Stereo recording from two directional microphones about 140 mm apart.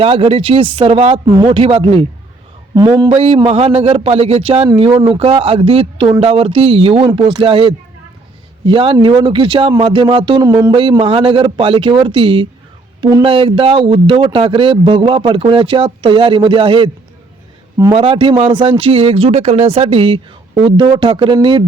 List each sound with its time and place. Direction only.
0.0 s a man's voice: 40° right (ahead or behind)
3.1 s a man's voice: 45° right (ahead or behind)
17.9 s a man's voice: 35° right (ahead or behind)